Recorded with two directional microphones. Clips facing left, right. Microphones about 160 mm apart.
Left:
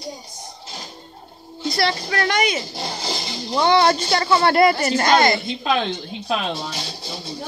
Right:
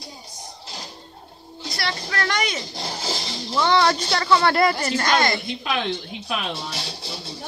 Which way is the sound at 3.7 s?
5° left (ahead or behind).